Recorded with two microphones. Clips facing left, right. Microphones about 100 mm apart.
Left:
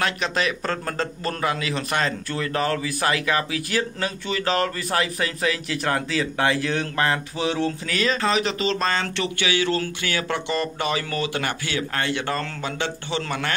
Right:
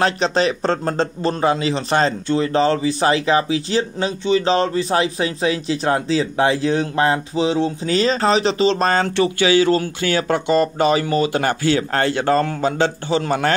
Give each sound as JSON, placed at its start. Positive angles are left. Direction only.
{"t": 0.0, "sound": "a man's voice", "side_deg": -30}
{"t": 10.5, "sound": "speech", "side_deg": -25}